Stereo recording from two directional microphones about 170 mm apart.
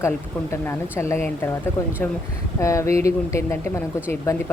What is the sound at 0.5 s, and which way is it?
Speech, 15° left (ahead or behind).